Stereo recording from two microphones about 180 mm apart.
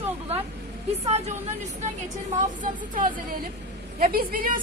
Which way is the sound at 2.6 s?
50° right (ahead or behind).